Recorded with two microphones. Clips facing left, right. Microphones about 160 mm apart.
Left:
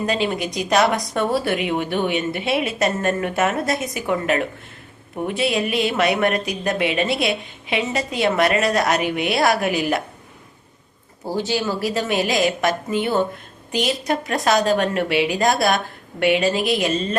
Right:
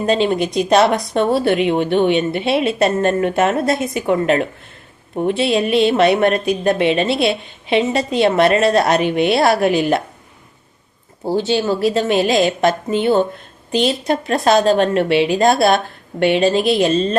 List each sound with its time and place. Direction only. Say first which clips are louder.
0.0 s a woman's voice: right 6 dB; 25° right (ahead or behind)
11.3 s a woman's voice: right 6 dB; 25° right (ahead or behind)